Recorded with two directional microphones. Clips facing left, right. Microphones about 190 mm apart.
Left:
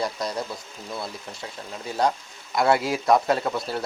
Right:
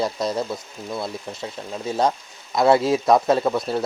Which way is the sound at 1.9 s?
25° right (ahead or behind).